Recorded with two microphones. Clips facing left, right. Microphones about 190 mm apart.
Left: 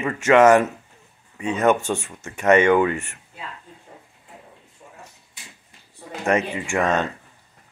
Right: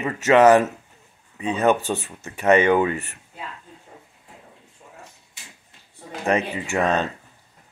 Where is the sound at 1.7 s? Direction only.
35° right (ahead or behind).